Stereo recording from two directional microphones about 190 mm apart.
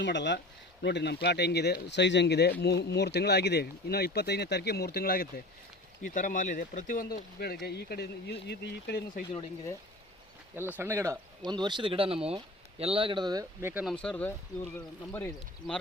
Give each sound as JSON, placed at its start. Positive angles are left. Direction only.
{"t": 0.0, "sound": "speech", "side_deg": 65}
{"t": 10.5, "sound": "speech", "side_deg": -10}
{"t": 13.8, "sound": "speech", "side_deg": 5}